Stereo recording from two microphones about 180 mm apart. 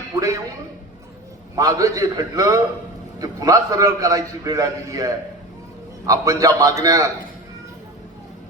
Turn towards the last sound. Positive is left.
turn(degrees=-20)  # may be behind; listen again after turning